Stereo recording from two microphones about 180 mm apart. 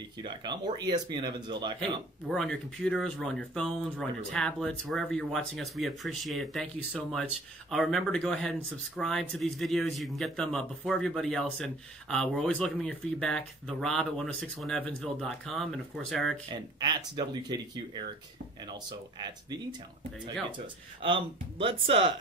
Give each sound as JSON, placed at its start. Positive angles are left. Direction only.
{"t": 0.2, "sound": "speech", "side_deg": -25}
{"t": 1.8, "sound": "speech", "side_deg": 5}
{"t": 16.5, "sound": "speech", "side_deg": -25}
{"t": 20.5, "sound": "speech", "side_deg": -30}